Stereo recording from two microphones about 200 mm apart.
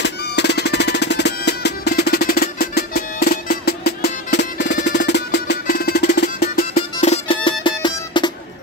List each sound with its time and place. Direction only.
0.0 s music: 55° left (ahead or behind)
6.6 s music: 35° left (ahead or behind)